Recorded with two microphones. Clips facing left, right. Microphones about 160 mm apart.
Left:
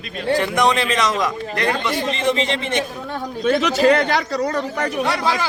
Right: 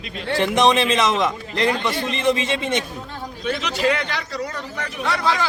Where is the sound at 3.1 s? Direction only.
45° left (ahead or behind).